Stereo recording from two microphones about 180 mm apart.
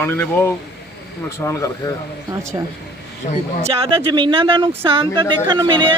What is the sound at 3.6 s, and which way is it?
Speech, 30° right (ahead or behind).